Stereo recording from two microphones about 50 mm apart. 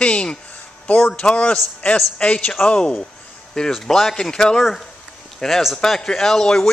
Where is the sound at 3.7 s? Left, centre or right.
Centre.